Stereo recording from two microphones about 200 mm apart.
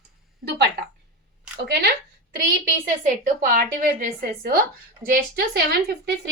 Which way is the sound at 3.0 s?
45° right (ahead or behind).